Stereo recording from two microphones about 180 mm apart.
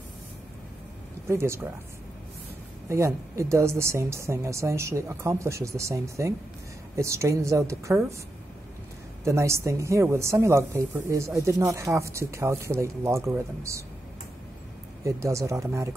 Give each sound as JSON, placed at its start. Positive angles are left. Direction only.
{"t": 1.2, "sound": "a woman's voice", "side_deg": -15}
{"t": 2.9, "sound": "a woman's voice", "side_deg": -15}
{"t": 9.2, "sound": "a woman's voice", "side_deg": -15}
{"t": 15.0, "sound": "a woman's voice", "side_deg": -15}